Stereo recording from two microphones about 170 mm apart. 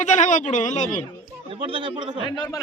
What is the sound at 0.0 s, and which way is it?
Speech, 45° left (ahead or behind).